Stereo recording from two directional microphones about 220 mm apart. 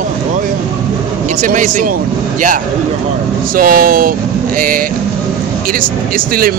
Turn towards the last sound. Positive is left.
turn(degrees=-40)  # may be behind; listen again after turning